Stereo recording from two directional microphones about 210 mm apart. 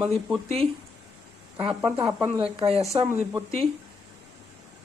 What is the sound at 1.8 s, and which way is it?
Speech, 10° right (ahead or behind).